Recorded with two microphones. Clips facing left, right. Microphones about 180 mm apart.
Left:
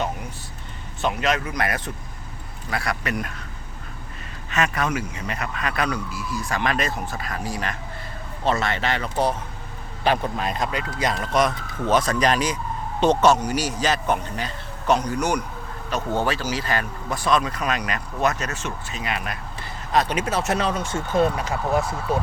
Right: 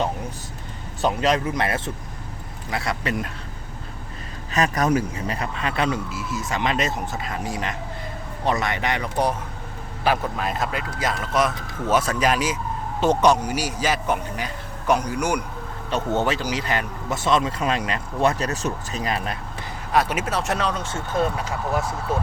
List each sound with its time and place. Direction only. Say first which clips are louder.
1.0 s speech: right 3 dB; 35° right (ahead or behind)
4.5 s a man's voice: right 3 dB; 35° right (ahead or behind); by 9.3 s 15° right (ahead or behind)
10.0 s a man's voice: even; 5° right (ahead or behind)
15.9 s speech: right 1 dB; 25° right (ahead or behind)
19.9 s speech: even; 10° right (ahead or behind); by 21.0 s 10° left (ahead or behind)